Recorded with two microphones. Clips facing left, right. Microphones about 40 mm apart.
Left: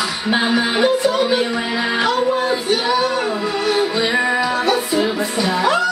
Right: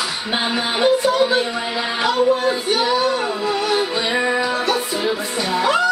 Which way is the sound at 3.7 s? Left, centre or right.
Centre.